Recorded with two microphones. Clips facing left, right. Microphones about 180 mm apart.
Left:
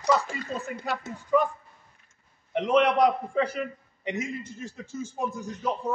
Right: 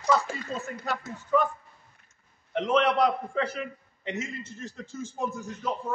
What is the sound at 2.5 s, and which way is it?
A man's voice, 10° left (ahead or behind).